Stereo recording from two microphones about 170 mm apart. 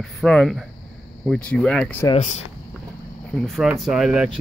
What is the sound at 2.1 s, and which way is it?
Speech, 45° left (ahead or behind).